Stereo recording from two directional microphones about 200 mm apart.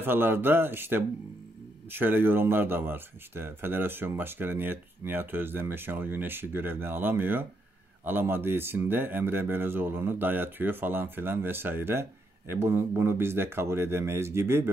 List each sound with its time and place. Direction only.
0.0 s speech: 10° right (ahead or behind)